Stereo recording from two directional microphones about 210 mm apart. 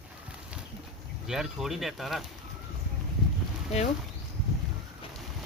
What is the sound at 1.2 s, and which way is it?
Speech, 5° right (ahead or behind).